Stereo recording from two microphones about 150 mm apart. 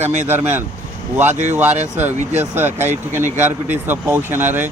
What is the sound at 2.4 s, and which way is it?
A man's voice, 15° right (ahead or behind).